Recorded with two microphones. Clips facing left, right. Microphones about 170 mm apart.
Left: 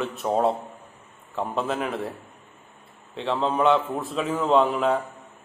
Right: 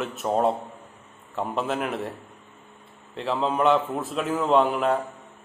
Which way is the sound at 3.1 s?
Centre (ahead or behind).